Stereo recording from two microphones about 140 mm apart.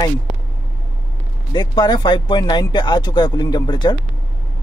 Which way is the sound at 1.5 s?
30° left (ahead or behind).